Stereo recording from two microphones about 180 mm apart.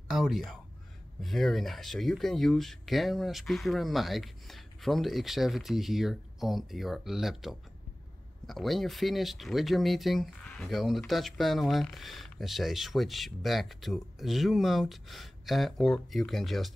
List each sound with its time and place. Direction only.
0.1 s speech: centre (ahead or behind)